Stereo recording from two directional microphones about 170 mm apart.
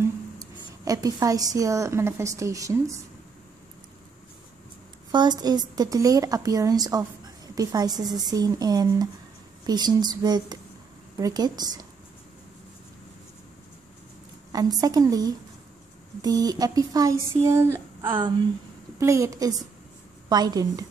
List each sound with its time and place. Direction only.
0.4 s a woman's voice: 20° right (ahead or behind)
5.1 s speech: 25° right (ahead or behind)
14.5 s a woman's voice: 20° right (ahead or behind)